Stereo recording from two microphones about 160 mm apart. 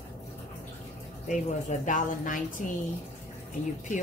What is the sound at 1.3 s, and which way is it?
A woman's voice, 50° left (ahead or behind).